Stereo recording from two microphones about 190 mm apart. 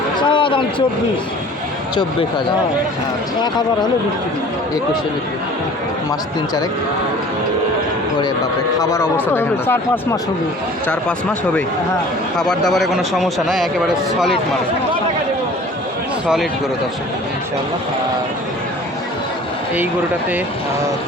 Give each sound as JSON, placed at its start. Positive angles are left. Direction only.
{"t": 0.2, "sound": "a sound", "side_deg": 25}
{"t": 8.8, "sound": "speech", "side_deg": 15}
{"t": 12.4, "sound": "a man's voice", "side_deg": 0}